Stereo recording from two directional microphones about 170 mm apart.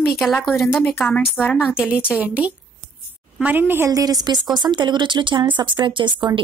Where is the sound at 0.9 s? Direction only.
10° left (ahead or behind).